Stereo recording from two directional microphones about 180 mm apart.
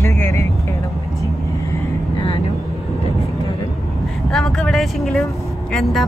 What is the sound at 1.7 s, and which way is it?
Vehicle, 25° left (ahead or behind).